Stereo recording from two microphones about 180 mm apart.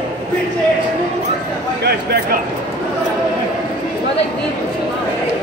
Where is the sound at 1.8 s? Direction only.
60° right (ahead or behind).